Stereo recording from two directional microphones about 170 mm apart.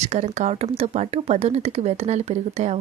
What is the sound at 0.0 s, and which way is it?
Speech, 40° right (ahead or behind).